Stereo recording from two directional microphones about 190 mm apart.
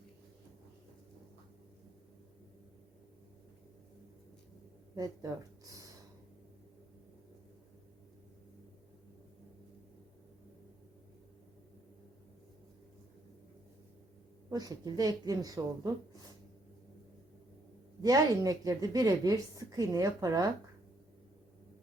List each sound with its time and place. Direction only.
4.9 s speech: 20° right (ahead or behind)
14.5 s a woman's voice: 20° right (ahead or behind)
18.0 s a woman's voice: 20° right (ahead or behind)